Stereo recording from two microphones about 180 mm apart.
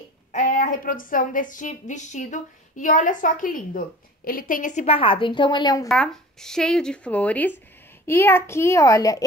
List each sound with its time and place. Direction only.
0.3 s a woman's voice: 45° left (ahead or behind); by 5.9 s 25° left (ahead or behind)
5.9 s a child's voice: 5° left (ahead or behind)